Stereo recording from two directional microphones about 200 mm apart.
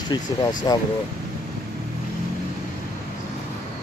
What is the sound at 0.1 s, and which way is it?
Speech, 20° left (ahead or behind).